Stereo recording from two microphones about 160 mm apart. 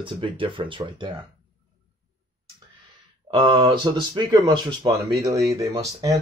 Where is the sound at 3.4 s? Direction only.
30° right (ahead or behind).